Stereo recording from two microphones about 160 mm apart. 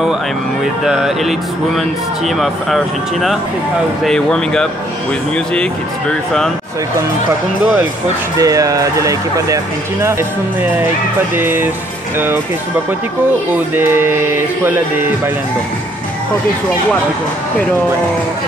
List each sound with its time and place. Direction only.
0.8 s speech: 5° right (ahead or behind)
8.4 s speech: 20° right (ahead or behind)
11.3 s music: 15° right (ahead or behind)
13.7 s music: 15° right (ahead or behind)